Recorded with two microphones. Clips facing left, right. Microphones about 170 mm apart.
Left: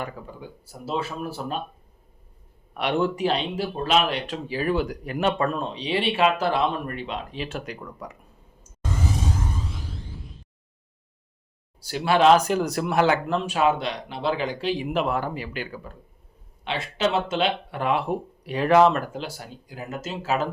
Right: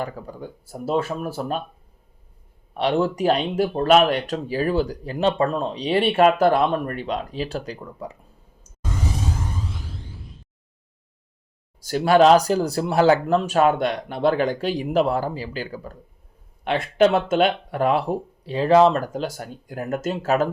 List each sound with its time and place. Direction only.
0.0 s speech: 40° right (ahead or behind)
2.7 s speech: 35° right (ahead or behind)
11.8 s speech: 45° right (ahead or behind)
16.6 s speech: 50° right (ahead or behind)